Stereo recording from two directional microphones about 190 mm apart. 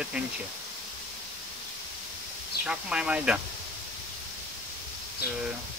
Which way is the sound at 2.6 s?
5° right (ahead or behind).